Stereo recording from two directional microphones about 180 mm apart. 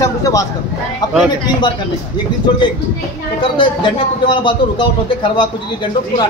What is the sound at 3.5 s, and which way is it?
A man's voice, 25° left (ahead or behind).